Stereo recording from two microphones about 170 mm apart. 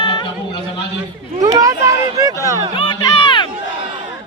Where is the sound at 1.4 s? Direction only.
20° right (ahead or behind).